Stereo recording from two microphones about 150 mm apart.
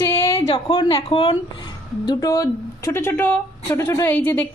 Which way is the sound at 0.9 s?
40° left (ahead or behind).